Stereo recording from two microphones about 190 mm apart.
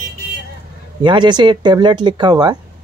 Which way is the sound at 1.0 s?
25° right (ahead or behind).